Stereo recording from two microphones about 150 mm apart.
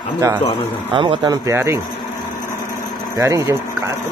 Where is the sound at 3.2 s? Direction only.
20° right (ahead or behind).